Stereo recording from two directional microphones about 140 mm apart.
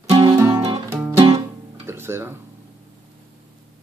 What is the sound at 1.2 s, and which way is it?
Music, 40° right (ahead or behind).